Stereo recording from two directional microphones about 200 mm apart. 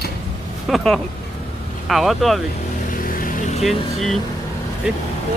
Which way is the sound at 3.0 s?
45° left (ahead or behind).